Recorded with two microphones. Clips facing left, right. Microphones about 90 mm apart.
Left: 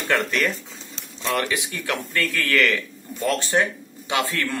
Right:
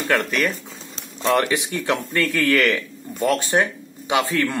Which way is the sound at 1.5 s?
20° right (ahead or behind).